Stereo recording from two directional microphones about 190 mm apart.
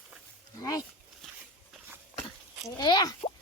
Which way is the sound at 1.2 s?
5° left (ahead or behind).